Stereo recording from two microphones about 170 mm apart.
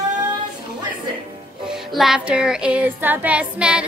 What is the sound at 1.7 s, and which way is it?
Music, centre (ahead or behind).